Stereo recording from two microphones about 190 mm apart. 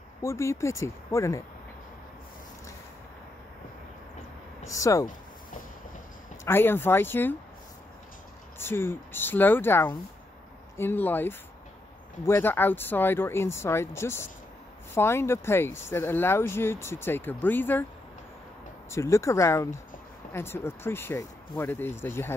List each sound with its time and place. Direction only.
0.2 s speech: 15° left (ahead or behind)
4.6 s speech: 15° left (ahead or behind)
6.4 s speech: 10° left (ahead or behind)
8.5 s speech: 10° left (ahead or behind)
18.9 s speech: 15° left (ahead or behind)